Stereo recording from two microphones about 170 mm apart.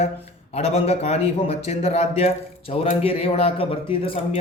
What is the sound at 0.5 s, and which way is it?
A man's voice, 40° left (ahead or behind).